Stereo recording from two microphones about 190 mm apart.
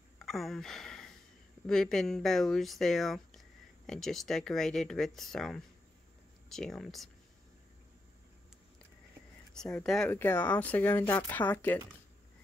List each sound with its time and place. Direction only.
0.2 s a sound: centre (ahead or behind)
1.7 s speech: centre (ahead or behind)
9.5 s speech: 5° left (ahead or behind)